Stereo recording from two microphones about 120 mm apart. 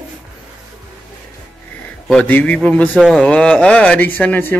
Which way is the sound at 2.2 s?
10° left (ahead or behind).